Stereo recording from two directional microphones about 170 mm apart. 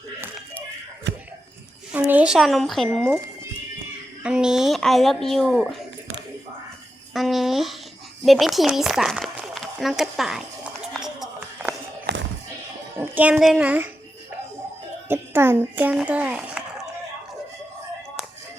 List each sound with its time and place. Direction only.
1.1 s a sound: 90° right
1.9 s speech: 10° right (ahead or behind)
4.2 s speech: 5° right (ahead or behind)
7.1 s speech: centre (ahead or behind)
11.0 s a sound: 5° right (ahead or behind)
12.1 s music: 75° right (ahead or behind)
13.0 s a child's voice: 10° right (ahead or behind)
15.1 s a child's voice: 15° right (ahead or behind)